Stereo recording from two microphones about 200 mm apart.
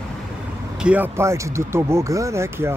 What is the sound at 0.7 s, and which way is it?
Speech, 5° right (ahead or behind).